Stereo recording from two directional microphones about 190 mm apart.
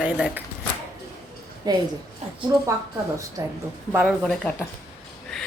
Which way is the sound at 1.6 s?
20° right (ahead or behind).